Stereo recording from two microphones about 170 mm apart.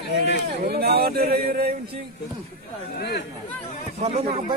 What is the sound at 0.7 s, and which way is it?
Speech, 65° right (ahead or behind).